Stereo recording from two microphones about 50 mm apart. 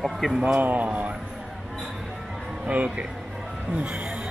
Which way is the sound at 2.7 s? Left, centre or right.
Right.